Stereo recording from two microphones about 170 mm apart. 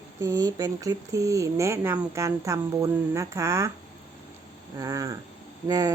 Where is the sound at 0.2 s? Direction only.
20° right (ahead or behind).